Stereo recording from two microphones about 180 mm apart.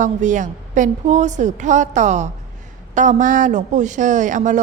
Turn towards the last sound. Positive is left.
turn(degrees=-45)  # may be behind; listen again after turning